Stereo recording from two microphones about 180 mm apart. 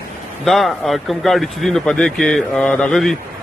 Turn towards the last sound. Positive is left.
turn(degrees=0)  # may be behind; listen again after turning